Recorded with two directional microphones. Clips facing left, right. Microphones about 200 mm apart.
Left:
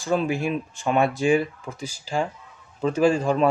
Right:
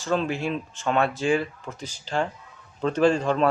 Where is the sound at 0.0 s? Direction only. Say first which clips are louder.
Left 2 dB; 10° left (ahead or behind).